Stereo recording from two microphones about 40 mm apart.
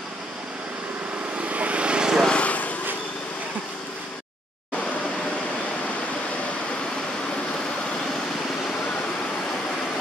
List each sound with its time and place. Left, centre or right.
1.4 s vehicle: right; by 2.2 s centre
2.3 s vehicle: left